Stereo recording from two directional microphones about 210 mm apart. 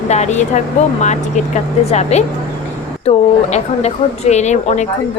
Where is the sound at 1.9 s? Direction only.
30° left (ahead or behind).